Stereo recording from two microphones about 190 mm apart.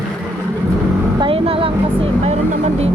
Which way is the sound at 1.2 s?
30° right (ahead or behind).